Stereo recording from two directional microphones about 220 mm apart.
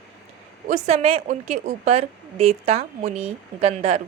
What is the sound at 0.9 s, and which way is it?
A woman's voice, 25° right (ahead or behind).